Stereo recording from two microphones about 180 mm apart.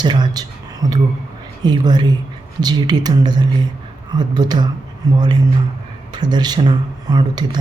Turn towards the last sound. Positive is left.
turn(degrees=-25)  # may be behind; listen again after turning